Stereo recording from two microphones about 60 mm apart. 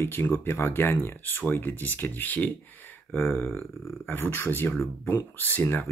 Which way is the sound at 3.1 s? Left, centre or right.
Left.